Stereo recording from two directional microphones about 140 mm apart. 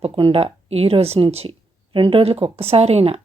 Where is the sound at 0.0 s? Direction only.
40° right (ahead or behind).